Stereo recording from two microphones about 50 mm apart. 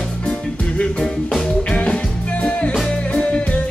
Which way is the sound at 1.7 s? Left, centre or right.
Left.